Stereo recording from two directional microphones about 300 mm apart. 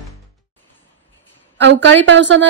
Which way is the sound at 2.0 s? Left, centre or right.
Right.